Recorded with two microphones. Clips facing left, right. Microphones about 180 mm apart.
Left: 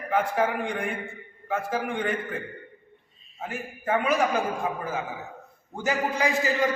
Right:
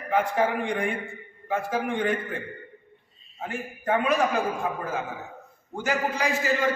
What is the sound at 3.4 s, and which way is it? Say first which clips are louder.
Speech: right 1 dB; centre (ahead or behind).